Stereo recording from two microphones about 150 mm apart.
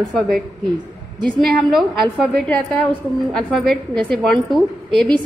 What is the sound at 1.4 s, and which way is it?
A woman's voice, centre (ahead or behind).